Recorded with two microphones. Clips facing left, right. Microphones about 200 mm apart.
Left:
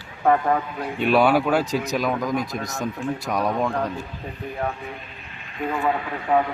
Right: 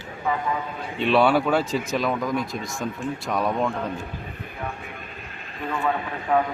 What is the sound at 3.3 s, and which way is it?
Speech, centre (ahead or behind).